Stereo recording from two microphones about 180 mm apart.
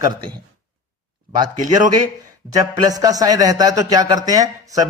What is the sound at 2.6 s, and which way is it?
Speech, 20° right (ahead or behind).